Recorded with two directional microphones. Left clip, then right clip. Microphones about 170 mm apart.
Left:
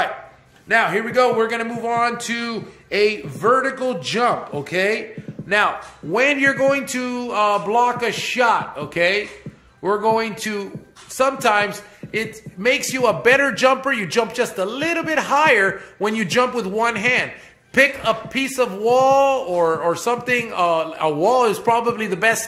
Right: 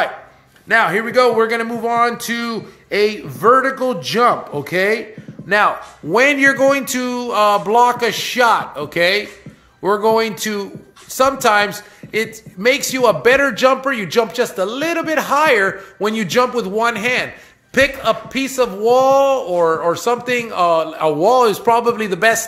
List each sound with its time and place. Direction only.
0.7 s a man's voice: 45° right (ahead or behind)
6.1 s a man's voice: 35° right (ahead or behind)